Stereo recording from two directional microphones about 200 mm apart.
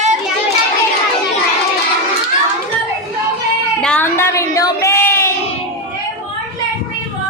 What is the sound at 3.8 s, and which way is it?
Child singing, 5° left (ahead or behind).